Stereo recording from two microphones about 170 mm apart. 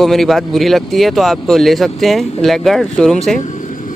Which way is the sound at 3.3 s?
45° left (ahead or behind).